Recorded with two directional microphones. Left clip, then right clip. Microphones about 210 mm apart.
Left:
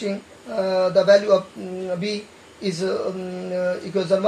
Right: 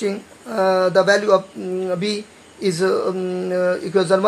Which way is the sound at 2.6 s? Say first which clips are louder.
Right 6 dB; 45° right (ahead or behind).